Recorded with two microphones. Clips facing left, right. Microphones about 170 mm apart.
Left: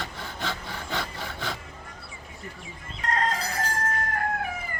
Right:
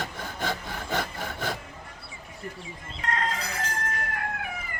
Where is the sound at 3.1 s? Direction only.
40° left (ahead or behind).